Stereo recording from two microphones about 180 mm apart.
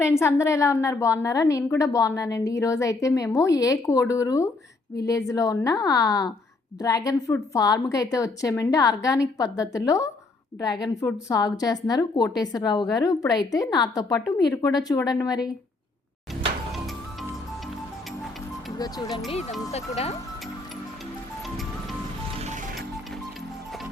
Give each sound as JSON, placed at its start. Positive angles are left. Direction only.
{"t": 0.0, "sound": "a woman's voice", "side_deg": 15}
{"t": 18.8, "sound": "a woman's voice", "side_deg": 20}
{"t": 19.3, "sound": "speech", "side_deg": 40}
{"t": 22.4, "sound": "music", "side_deg": -40}